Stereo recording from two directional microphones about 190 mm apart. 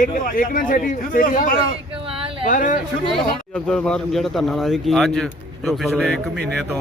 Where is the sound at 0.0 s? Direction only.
45° left (ahead or behind).